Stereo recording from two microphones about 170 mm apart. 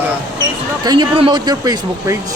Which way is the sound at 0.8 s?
25° right (ahead or behind).